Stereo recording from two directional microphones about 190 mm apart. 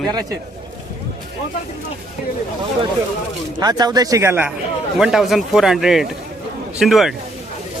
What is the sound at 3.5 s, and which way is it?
A man's voice, 20° right (ahead or behind).